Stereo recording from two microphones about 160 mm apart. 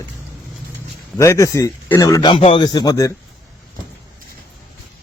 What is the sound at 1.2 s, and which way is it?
Speech, 20° left (ahead or behind).